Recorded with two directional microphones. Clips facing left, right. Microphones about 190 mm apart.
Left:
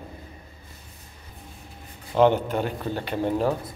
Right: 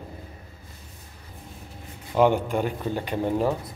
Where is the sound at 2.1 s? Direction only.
10° right (ahead or behind).